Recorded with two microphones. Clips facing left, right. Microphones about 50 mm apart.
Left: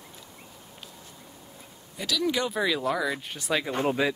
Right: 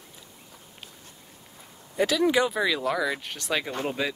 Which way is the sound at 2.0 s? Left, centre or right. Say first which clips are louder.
Right 6 dB; right.